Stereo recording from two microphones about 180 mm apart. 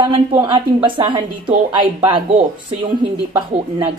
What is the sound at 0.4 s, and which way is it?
Speech, 30° right (ahead or behind).